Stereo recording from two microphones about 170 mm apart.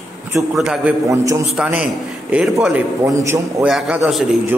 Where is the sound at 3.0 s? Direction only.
20° right (ahead or behind).